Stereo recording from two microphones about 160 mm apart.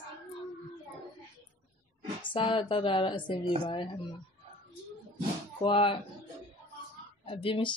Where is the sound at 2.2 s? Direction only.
30° left (ahead or behind).